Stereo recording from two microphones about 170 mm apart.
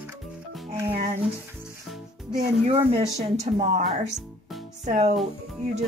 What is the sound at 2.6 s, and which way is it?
Speech, 35° right (ahead or behind).